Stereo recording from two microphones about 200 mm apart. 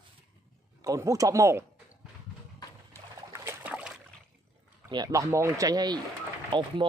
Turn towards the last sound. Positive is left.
turn(degrees=-25)  # may be behind; listen again after turning